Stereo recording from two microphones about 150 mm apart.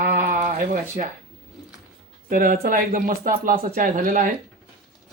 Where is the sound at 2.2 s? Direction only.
70° right (ahead or behind).